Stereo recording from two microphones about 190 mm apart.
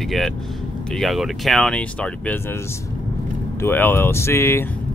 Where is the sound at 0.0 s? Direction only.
Centre (ahead or behind).